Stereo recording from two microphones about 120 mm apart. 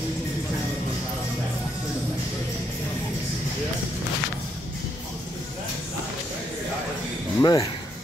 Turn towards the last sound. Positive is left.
turn(degrees=35)  # may be behind; listen again after turning